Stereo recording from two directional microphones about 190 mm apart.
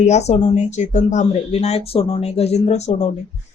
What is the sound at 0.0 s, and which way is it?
Speech, 35° left (ahead or behind).